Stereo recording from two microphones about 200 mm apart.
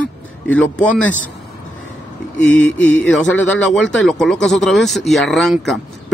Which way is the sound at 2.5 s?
5° left (ahead or behind).